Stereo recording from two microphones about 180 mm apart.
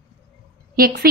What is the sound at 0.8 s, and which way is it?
Speech, 55° right (ahead or behind).